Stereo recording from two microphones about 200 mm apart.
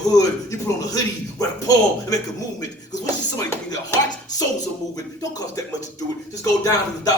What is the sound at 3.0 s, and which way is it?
Music, 15° left (ahead or behind).